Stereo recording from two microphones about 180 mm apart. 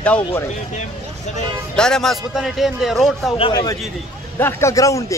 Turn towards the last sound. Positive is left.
turn(degrees=15)  # may be behind; listen again after turning